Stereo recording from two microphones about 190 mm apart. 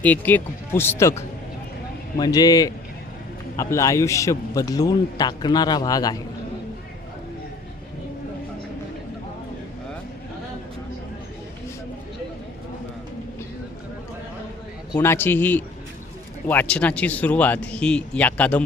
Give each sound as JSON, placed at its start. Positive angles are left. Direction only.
{"t": 0.0, "sound": "speech", "side_deg": 10}
{"t": 2.1, "sound": "a man's voice", "side_deg": 20}
{"t": 14.9, "sound": "speech", "side_deg": 10}